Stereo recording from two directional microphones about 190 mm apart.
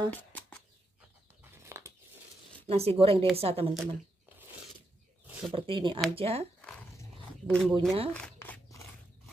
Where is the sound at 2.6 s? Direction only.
30° right (ahead or behind).